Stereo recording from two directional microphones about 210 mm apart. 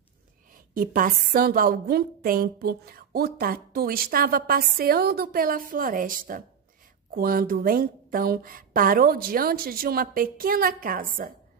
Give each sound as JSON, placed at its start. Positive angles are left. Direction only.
{"t": 0.7, "sound": "a woman's voice", "side_deg": -40}